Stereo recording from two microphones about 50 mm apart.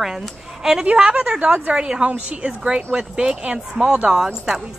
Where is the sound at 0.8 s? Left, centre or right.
Right.